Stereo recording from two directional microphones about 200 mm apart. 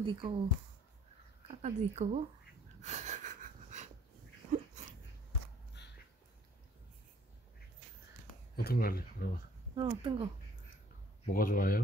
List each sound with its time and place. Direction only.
0.0 s speech: 25° right (ahead or behind)
1.5 s speech: 35° right (ahead or behind)
2.8 s gasp: 35° right (ahead or behind)
5.8 s a sound: 60° left (ahead or behind)
8.5 s speech: 50° left (ahead or behind)
9.8 s speech: 25° right (ahead or behind)
11.3 s speech: 45° left (ahead or behind)